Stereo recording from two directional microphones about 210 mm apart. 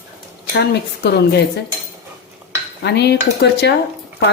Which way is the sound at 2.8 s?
55° left (ahead or behind).